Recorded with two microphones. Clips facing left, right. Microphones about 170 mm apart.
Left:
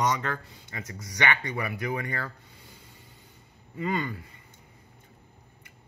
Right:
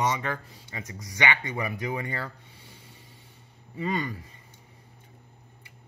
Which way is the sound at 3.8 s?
35° right (ahead or behind).